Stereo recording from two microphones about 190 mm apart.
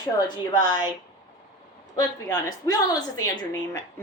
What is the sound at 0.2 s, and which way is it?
Speech, 20° left (ahead or behind).